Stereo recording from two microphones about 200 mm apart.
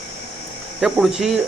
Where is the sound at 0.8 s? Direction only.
5° right (ahead or behind).